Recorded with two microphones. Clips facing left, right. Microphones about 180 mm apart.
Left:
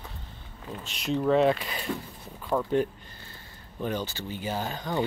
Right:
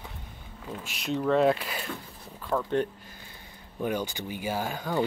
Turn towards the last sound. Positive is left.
turn(degrees=-10)  # may be behind; listen again after turning